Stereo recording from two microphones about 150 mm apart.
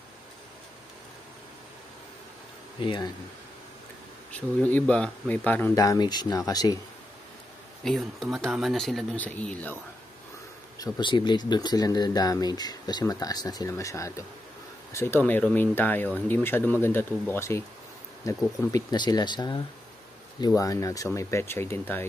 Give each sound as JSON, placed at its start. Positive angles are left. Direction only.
{"t": 2.8, "sound": "speech", "side_deg": 30}
{"t": 4.3, "sound": "speech", "side_deg": 10}
{"t": 5.8, "sound": "speech", "side_deg": 25}
{"t": 7.8, "sound": "speech", "side_deg": 0}
{"t": 10.8, "sound": "speech", "side_deg": 30}